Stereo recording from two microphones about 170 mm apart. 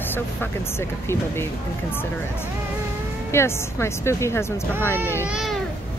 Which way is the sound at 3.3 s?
15° left (ahead or behind).